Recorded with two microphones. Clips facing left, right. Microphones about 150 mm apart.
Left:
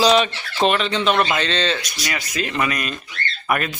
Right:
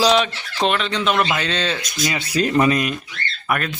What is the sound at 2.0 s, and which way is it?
Speech, 25° right (ahead or behind).